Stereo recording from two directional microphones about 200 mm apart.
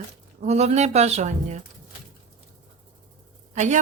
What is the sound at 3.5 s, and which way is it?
Speech, 35° right (ahead or behind).